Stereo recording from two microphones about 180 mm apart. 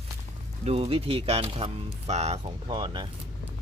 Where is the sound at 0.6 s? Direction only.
30° right (ahead or behind).